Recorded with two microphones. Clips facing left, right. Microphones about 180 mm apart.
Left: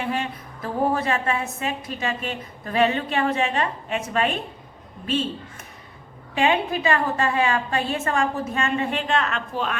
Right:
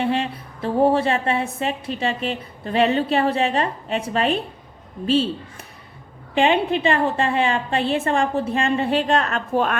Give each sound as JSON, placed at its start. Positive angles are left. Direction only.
{"t": 0.0, "sound": "a woman's voice", "side_deg": -30}